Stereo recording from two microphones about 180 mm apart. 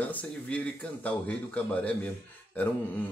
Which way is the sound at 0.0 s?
10° left (ahead or behind).